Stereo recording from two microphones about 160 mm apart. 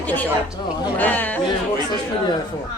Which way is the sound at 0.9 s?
10° left (ahead or behind).